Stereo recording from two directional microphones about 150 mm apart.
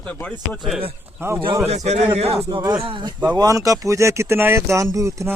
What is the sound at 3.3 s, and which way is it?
Speech, 20° right (ahead or behind).